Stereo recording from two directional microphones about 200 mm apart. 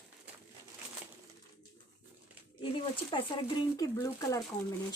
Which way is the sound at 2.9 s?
25° left (ahead or behind).